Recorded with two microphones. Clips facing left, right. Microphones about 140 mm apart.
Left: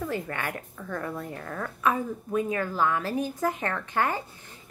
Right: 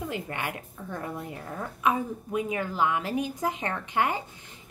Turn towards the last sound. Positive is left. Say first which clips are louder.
# even
turn(degrees=-15)  # may be behind; listen again after turning